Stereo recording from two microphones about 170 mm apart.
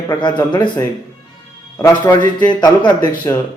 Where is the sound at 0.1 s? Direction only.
25° left (ahead or behind).